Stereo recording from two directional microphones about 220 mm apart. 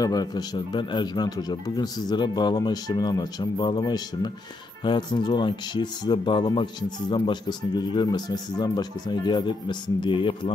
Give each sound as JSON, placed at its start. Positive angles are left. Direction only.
{"t": 0.0, "sound": "speech", "side_deg": 20}